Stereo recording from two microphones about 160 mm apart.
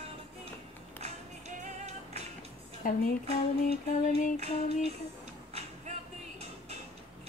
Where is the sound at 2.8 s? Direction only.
55° left (ahead or behind).